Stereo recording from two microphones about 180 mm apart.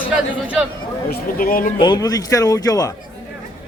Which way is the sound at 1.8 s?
25° left (ahead or behind).